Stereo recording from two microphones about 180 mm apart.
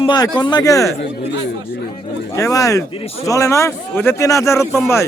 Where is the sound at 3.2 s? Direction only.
15° left (ahead or behind).